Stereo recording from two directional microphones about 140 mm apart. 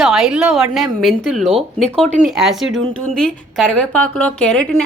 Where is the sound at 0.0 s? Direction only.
Centre (ahead or behind).